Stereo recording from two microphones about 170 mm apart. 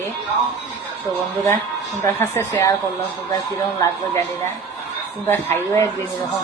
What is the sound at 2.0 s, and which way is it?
Speech, 15° left (ahead or behind).